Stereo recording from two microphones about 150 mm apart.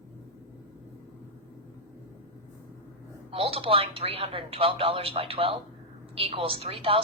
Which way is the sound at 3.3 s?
40° right (ahead or behind).